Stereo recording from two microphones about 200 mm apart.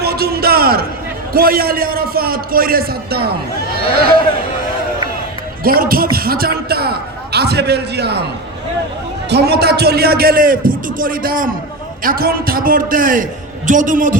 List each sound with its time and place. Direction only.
0.0 s a sound: 50° right (ahead or behind)
1.3 s a man's voice: 45° right (ahead or behind)
5.6 s a man's voice: 45° right (ahead or behind)
9.3 s a man's voice: 55° right (ahead or behind)